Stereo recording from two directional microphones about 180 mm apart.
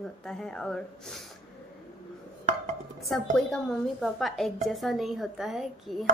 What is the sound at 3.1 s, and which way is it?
Speech, 5° left (ahead or behind).